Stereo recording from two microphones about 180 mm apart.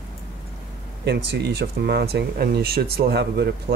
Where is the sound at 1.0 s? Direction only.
70° right (ahead or behind).